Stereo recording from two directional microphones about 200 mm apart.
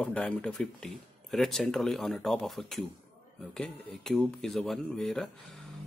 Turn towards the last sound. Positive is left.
turn(degrees=0)  # may be behind; listen again after turning